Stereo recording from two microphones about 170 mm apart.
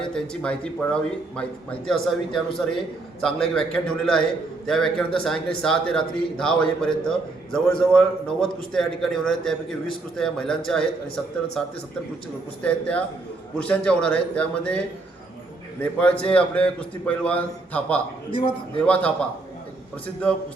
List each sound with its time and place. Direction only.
0.1 s a man's voice: 5° left (ahead or behind)
15.8 s a man's voice: 5° left (ahead or behind)
18.3 s a man's voice: 30° left (ahead or behind)
18.8 s a man's voice: 5° left (ahead or behind)